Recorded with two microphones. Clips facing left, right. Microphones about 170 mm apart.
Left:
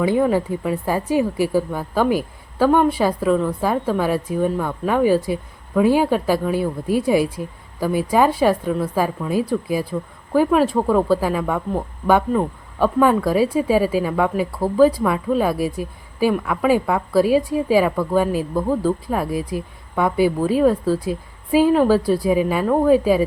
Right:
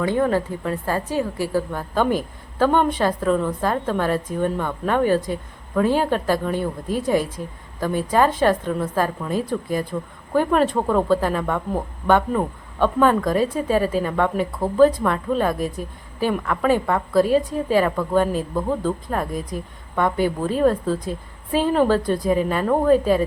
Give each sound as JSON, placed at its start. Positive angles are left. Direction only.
{"t": 0.0, "sound": "speech", "side_deg": 10}